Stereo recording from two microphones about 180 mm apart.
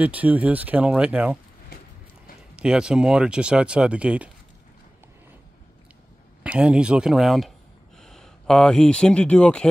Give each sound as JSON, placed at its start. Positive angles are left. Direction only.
{"t": 0.0, "sound": "speech", "side_deg": -10}
{"t": 2.5, "sound": "speech", "side_deg": -5}
{"t": 6.4, "sound": "speech", "side_deg": -5}